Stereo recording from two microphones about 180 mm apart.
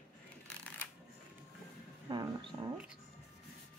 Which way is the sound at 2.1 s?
25° right (ahead or behind).